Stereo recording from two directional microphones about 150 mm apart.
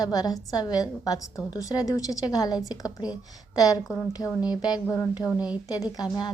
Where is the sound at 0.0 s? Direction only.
25° left (ahead or behind).